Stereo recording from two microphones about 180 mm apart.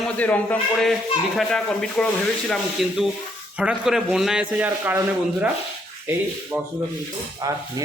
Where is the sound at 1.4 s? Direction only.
5° left (ahead or behind).